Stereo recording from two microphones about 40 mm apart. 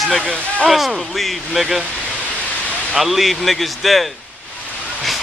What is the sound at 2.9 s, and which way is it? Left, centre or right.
Speech, centre.